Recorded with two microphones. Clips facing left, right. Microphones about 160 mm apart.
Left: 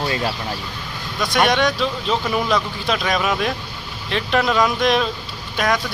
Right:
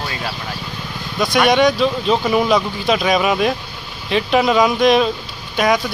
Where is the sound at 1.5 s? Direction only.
5° right (ahead or behind).